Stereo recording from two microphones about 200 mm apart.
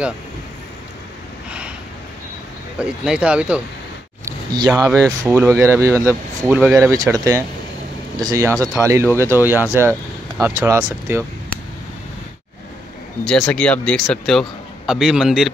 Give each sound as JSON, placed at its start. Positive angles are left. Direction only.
{"t": 2.8, "sound": "speech", "side_deg": -5}
{"t": 4.2, "sound": "a sound", "side_deg": -15}
{"t": 5.2, "sound": "speech", "side_deg": -15}
{"t": 13.2, "sound": "speech", "side_deg": 0}